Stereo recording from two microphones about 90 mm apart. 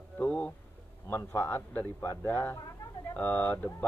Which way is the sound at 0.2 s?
15° left (ahead or behind).